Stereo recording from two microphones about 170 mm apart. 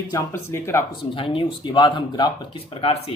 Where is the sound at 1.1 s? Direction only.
30° left (ahead or behind).